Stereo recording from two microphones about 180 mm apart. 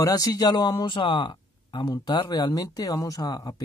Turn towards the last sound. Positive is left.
turn(degrees=20)  # may be behind; listen again after turning